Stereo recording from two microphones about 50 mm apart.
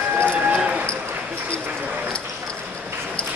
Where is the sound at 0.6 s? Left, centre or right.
Right.